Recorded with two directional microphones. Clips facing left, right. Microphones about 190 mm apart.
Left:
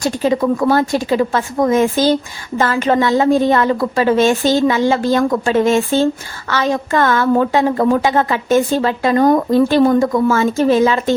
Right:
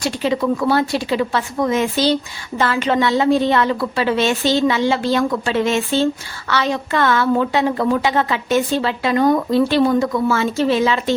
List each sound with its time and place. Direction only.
0.0 s a woman's voice: 45° left (ahead or behind)